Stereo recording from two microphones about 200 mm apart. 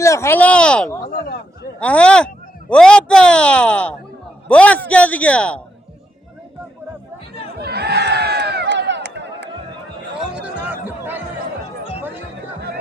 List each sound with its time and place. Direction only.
0.0 s a man's voice: 15° left (ahead or behind)
7.6 s crowd: 55° right (ahead or behind)
10.3 s chatter: 10° right (ahead or behind)